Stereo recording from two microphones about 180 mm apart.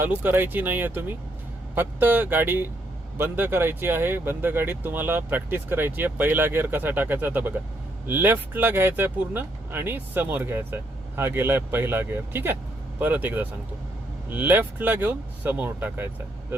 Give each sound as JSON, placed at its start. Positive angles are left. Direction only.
{"t": 0.0, "sound": "speech", "side_deg": -10}